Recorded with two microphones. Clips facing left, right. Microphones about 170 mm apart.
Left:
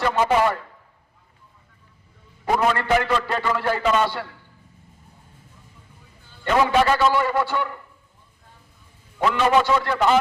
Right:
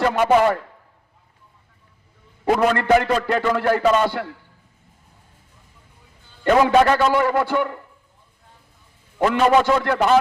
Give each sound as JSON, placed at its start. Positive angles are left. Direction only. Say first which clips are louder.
{"t": 0.0, "sound": "a man's voice", "louder": "right 3 dB", "side_deg": -50}
{"t": 2.4, "sound": "a man's voice", "louder": "right 3 dB", "side_deg": -55}
{"t": 6.4, "sound": "a man's voice", "louder": "right 4 dB", "side_deg": -55}
{"t": 9.1, "sound": "a man's voice", "louder": "right 3 dB", "side_deg": -50}